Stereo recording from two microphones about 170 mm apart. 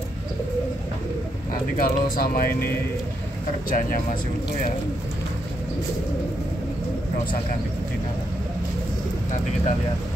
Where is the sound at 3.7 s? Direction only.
55° left (ahead or behind).